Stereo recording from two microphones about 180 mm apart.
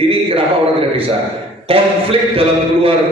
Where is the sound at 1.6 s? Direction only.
30° right (ahead or behind).